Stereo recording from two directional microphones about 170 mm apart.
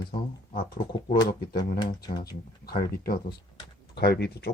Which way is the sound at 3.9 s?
75° left (ahead or behind).